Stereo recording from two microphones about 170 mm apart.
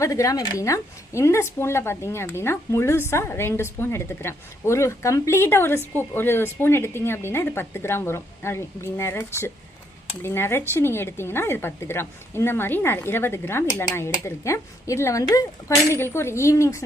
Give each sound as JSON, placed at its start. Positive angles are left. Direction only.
{"t": 0.0, "sound": "speech", "side_deg": 20}